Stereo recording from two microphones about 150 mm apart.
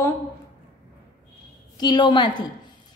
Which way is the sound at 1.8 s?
30° left (ahead or behind).